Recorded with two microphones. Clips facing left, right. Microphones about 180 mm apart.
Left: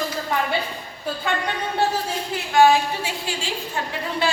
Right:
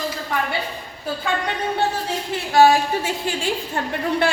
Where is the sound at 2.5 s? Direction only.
45° right (ahead or behind).